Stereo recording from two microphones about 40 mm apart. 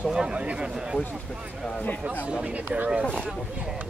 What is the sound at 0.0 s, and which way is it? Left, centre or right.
Speech, right.